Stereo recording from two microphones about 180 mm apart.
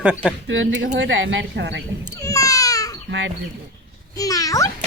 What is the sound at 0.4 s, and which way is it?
Speech, 90° right.